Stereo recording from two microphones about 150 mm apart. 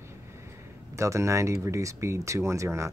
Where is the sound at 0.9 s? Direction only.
20° right (ahead or behind).